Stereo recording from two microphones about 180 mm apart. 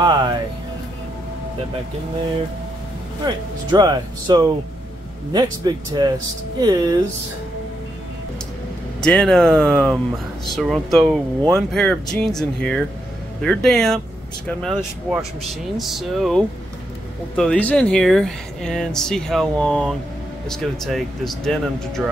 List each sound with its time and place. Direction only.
0.0 s music: 25° right (ahead or behind)
3.7 s speech: 20° right (ahead or behind)
9.0 s speech: 5° left (ahead or behind)